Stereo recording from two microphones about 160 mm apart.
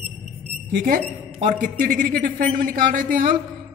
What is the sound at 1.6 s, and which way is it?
A woman's voice, 60° right (ahead or behind).